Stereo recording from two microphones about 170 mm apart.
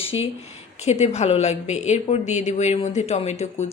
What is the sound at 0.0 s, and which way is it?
Speech, 35° left (ahead or behind).